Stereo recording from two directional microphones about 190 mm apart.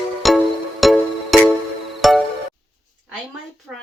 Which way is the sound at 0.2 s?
Centre (ahead or behind).